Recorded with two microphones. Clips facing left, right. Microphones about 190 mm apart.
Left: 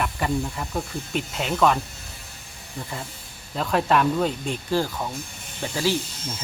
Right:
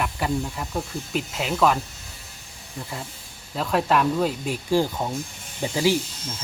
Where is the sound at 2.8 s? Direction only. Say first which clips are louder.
Even; centre (ahead or behind).